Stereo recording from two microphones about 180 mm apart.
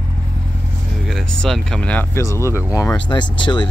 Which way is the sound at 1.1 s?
Centre (ahead or behind).